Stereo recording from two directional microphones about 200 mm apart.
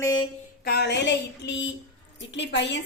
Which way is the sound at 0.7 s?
55° left (ahead or behind).